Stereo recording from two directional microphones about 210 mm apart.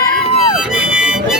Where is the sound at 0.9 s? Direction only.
5° right (ahead or behind).